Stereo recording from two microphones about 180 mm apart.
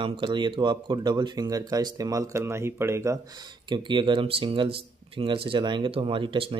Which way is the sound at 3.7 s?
25° right (ahead or behind).